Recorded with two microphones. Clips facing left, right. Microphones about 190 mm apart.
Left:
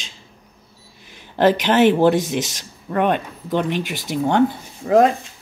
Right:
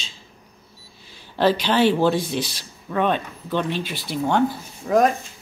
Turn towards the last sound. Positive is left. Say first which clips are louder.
# left 3 dB
turn(degrees=25)  # may be behind; listen again after turning